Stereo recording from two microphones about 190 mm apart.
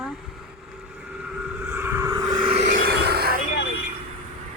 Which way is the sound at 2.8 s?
55° right (ahead or behind).